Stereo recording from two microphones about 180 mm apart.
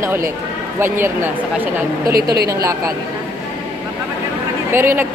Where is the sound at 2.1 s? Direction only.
60° right (ahead or behind).